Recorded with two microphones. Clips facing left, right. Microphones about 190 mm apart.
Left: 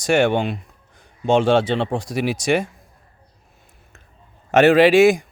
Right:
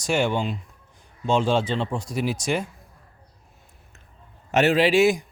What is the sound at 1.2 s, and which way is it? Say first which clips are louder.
Speech: left 5 dB; 75° left (ahead or behind).